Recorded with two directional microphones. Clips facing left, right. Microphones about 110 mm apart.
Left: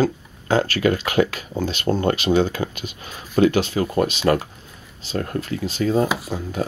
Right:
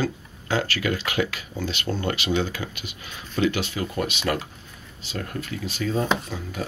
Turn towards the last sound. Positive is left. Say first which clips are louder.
# left 5 dB
turn(degrees=35)  # may be behind; listen again after turning